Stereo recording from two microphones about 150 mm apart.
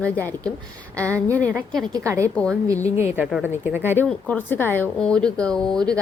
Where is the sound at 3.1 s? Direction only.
10° right (ahead or behind).